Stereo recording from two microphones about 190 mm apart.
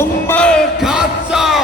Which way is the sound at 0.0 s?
10° left (ahead or behind).